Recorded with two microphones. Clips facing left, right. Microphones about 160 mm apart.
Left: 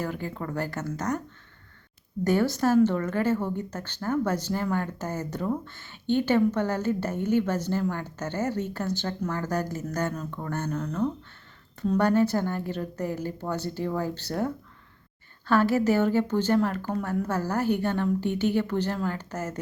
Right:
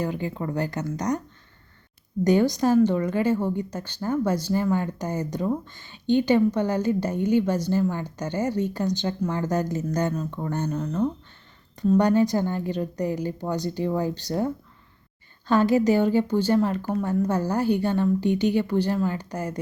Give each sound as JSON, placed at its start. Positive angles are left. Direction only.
{"t": 0.0, "sound": "speech", "side_deg": -15}
{"t": 2.2, "sound": "speech", "side_deg": -15}